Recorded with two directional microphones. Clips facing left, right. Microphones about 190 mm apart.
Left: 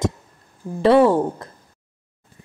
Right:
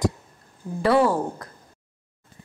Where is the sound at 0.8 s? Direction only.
25° left (ahead or behind).